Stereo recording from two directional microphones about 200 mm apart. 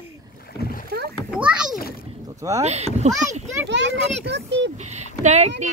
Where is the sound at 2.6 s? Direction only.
35° right (ahead or behind).